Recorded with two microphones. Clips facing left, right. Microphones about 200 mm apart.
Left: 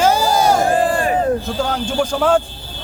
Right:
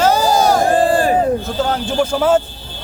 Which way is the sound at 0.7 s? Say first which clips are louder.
Right 3 dB; 35° right (ahead or behind).